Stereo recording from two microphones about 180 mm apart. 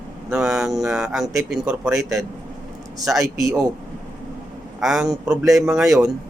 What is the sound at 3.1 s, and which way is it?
Speech, centre (ahead or behind).